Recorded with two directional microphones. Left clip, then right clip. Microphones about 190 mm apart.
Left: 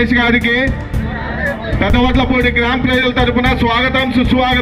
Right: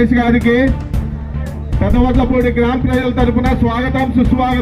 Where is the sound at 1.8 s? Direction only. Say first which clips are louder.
Left 1 dB; 35° right (ahead or behind).